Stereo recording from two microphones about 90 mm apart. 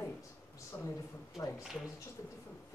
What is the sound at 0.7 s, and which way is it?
Speech, 20° left (ahead or behind).